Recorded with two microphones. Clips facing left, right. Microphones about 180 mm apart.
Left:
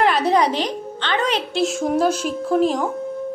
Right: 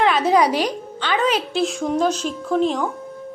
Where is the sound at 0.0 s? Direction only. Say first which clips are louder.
Right 1 dB; centre (ahead or behind).